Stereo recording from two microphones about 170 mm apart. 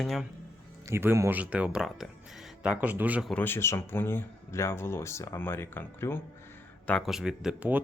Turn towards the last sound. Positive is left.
turn(degrees=-5)  # may be behind; listen again after turning